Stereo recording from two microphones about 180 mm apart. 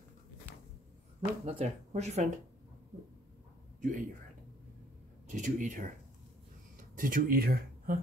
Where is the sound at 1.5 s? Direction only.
35° right (ahead or behind).